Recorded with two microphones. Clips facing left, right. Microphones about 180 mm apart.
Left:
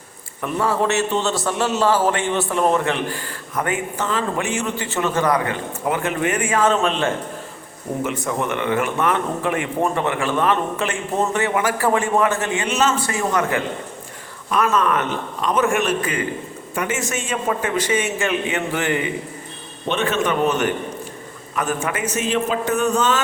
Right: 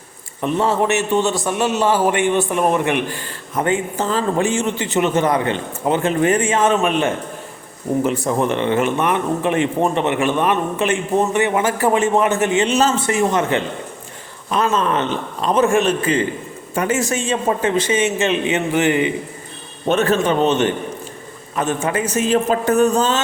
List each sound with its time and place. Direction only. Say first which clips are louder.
0.4 s a man's voice: right 3 dB; 25° right (ahead or behind)
8.0 s a man's voice: right 3 dB; 35° right (ahead or behind)
19.9 s a man's voice: right 6 dB; 45° right (ahead or behind)
20.2 s a man's voice: right 3 dB; 25° right (ahead or behind)